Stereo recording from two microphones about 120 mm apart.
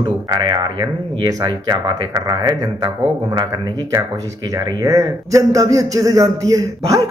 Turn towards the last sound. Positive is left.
turn(degrees=-30)  # may be behind; listen again after turning